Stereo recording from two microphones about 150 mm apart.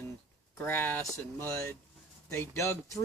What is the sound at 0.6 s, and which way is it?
Speech, 10° left (ahead or behind).